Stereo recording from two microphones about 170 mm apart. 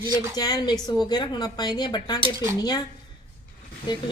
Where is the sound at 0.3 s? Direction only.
25° left (ahead or behind).